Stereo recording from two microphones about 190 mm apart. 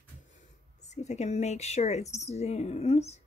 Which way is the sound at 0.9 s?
35° left (ahead or behind).